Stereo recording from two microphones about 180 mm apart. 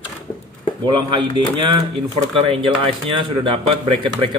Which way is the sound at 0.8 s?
25° right (ahead or behind).